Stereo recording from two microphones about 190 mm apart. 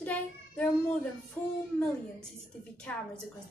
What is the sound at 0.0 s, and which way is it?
A child's voice, 5° left (ahead or behind).